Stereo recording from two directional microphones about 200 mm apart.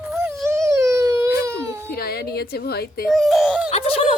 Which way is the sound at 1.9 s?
50° left (ahead or behind).